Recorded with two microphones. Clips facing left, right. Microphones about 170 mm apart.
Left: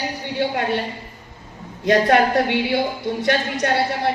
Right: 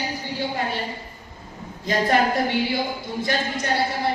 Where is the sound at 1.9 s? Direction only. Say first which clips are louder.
Left 5 dB; 70° left (ahead or behind).